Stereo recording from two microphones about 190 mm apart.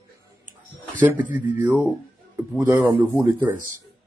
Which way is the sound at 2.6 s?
10° right (ahead or behind).